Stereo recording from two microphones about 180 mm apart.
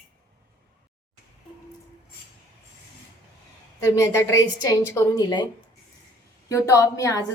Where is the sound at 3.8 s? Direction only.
15° left (ahead or behind).